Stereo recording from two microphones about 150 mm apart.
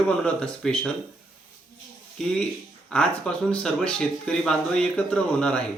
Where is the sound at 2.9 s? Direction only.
5° left (ahead or behind).